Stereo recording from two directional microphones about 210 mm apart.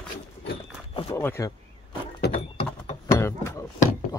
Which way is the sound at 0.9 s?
15° left (ahead or behind).